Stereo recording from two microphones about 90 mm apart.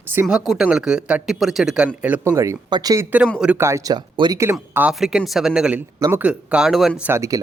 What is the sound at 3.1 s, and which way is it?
Speech, 20° right (ahead or behind).